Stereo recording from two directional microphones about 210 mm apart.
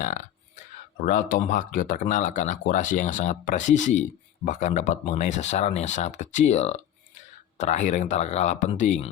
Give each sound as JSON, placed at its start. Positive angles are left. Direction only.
{"t": 0.0, "sound": "speech", "side_deg": 35}